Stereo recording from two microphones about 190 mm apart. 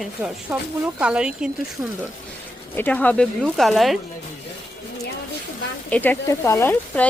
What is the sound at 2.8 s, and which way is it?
Speech, 10° left (ahead or behind).